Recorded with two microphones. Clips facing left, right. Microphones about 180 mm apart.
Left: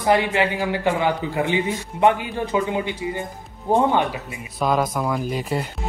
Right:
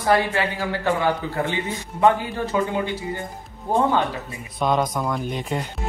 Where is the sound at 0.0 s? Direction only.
20° left (ahead or behind).